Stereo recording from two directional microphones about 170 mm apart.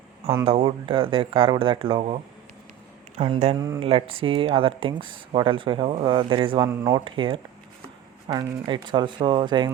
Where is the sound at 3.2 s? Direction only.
35° right (ahead or behind).